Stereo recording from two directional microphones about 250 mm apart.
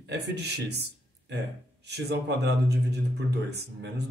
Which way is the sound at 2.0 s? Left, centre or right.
Right.